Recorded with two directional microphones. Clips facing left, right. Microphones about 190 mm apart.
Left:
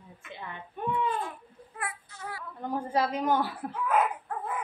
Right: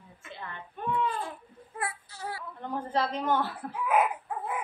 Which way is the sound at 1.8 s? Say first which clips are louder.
Right 2 dB; 30° right (ahead or behind).